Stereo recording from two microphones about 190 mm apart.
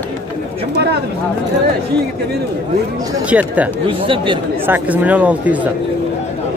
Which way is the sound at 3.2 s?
5° right (ahead or behind).